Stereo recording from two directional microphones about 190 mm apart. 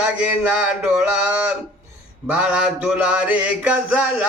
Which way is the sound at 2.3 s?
5° right (ahead or behind).